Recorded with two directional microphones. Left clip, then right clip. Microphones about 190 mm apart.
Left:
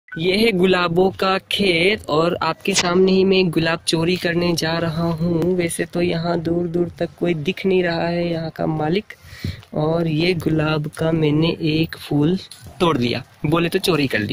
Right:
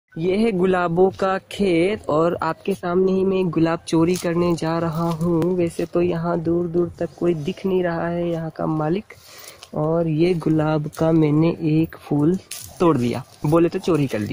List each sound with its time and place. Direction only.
0.1 s speech: centre (ahead or behind)
2.9 s speech: 10° left (ahead or behind)